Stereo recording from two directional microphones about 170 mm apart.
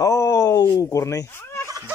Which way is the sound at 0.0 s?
20° left (ahead or behind).